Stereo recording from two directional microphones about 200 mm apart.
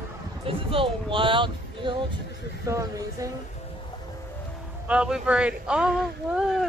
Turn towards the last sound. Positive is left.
turn(degrees=0)  # may be behind; listen again after turning